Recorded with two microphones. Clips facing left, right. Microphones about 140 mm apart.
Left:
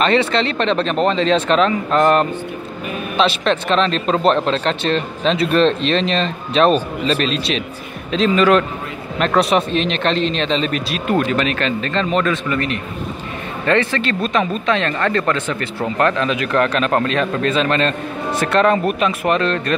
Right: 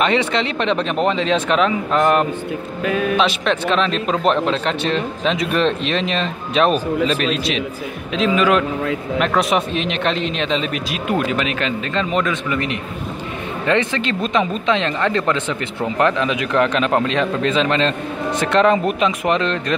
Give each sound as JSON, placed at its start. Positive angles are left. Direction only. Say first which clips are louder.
{"t": 0.0, "sound": "a man's voice", "louder": "left 2 dB", "side_deg": -15}
{"t": 2.8, "sound": "speech", "louder": "right 9 dB", "side_deg": -90}
{"t": 3.2, "sound": "a man's voice", "louder": "left 1 dB", "side_deg": -10}
{"t": 9.7, "sound": "a man's voice", "louder": "left 2 dB", "side_deg": -10}